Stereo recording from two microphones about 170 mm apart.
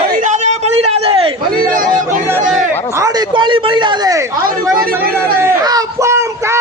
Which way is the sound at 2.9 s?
20° right (ahead or behind).